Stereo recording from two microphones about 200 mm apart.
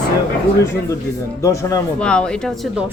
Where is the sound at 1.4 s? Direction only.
15° left (ahead or behind).